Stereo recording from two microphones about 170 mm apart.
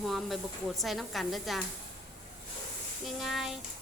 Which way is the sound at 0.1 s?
Centre (ahead or behind).